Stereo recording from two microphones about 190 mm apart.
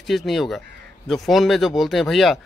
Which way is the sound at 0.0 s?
Centre (ahead or behind).